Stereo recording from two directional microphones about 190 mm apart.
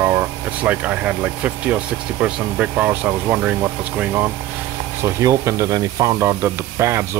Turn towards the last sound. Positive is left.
turn(degrees=-15)  # may be behind; listen again after turning